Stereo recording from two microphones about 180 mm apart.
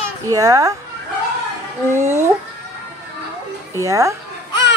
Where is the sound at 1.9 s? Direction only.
15° right (ahead or behind).